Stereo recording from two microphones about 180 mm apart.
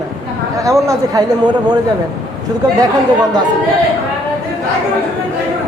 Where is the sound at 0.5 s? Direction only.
20° right (ahead or behind).